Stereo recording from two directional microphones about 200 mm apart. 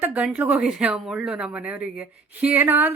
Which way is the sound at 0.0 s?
5° right (ahead or behind).